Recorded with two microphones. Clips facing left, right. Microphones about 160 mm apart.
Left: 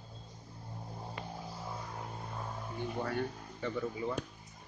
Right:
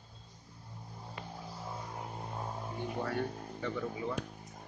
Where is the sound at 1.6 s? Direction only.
10° right (ahead or behind).